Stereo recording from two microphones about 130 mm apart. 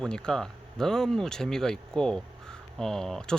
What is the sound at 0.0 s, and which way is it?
Speech, 5° left (ahead or behind).